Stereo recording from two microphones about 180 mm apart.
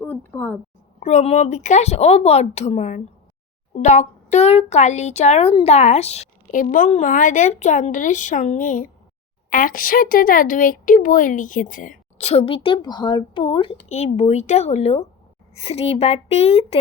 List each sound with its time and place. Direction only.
0.0 s a sound: 10° left (ahead or behind)
0.9 s a woman's voice: 40° left (ahead or behind)
12.1 s a woman's voice: 35° left (ahead or behind)